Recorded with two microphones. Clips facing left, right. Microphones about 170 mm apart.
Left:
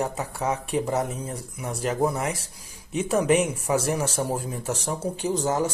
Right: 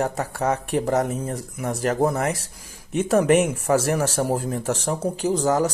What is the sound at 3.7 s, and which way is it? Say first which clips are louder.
Speech: right 5 dB; 60° right (ahead or behind).